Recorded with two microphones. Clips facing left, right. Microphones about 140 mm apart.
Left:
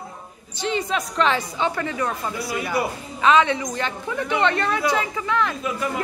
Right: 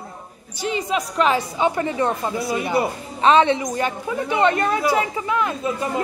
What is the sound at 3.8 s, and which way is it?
Speech, 10° right (ahead or behind).